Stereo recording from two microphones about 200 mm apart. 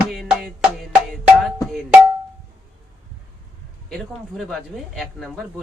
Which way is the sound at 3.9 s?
Centre (ahead or behind).